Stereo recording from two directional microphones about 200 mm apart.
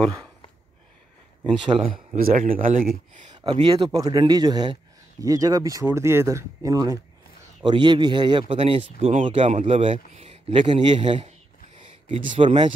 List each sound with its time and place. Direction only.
0.0 s speech: 20° right (ahead or behind)
2.1 s speech: 45° right (ahead or behind)
3.3 s a man's voice: 25° right (ahead or behind)